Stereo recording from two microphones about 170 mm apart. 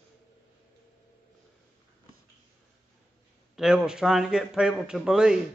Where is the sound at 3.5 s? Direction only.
5° right (ahead or behind).